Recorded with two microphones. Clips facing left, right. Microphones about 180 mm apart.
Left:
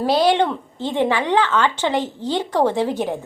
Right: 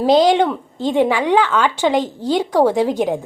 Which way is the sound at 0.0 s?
15° right (ahead or behind).